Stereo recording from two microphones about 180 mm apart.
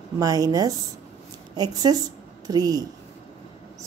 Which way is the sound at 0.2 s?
20° right (ahead or behind).